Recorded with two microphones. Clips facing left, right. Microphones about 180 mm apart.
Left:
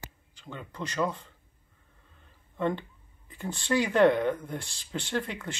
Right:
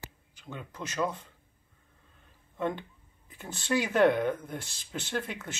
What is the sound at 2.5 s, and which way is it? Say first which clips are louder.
Speech: left 3 dB; 10° right (ahead or behind).